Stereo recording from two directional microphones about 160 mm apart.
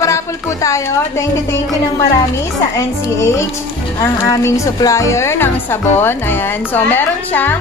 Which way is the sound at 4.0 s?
20° left (ahead or behind).